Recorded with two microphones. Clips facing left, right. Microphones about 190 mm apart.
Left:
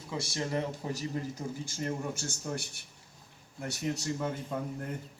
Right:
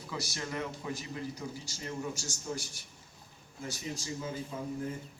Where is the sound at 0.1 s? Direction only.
25° left (ahead or behind).